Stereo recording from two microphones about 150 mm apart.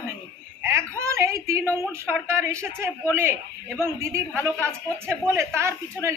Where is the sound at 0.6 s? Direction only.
15° right (ahead or behind).